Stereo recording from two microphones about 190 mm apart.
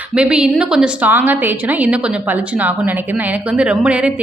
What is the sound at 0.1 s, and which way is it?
A woman's voice, 5° right (ahead or behind).